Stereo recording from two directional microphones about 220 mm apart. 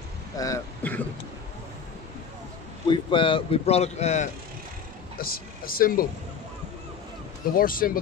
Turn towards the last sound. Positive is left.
turn(degrees=40)  # may be behind; listen again after turning